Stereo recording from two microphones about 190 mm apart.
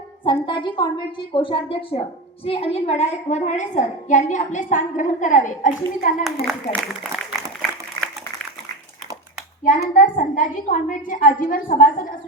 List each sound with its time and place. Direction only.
0.3 s a woman's voice: 25° left (ahead or behind); by 6.2 s 40° left (ahead or behind)
6.5 s a man's voice: centre (ahead or behind)
9.6 s a child's voice: 45° left (ahead or behind)